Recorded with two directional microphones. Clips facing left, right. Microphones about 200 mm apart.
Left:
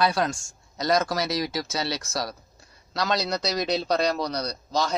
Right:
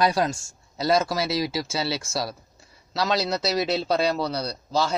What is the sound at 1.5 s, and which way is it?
Speech, 30° right (ahead or behind).